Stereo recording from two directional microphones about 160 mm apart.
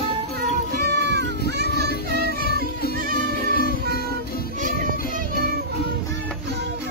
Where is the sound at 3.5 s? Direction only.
70° left (ahead or behind).